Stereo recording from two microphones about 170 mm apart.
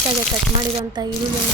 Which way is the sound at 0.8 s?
25° right (ahead or behind).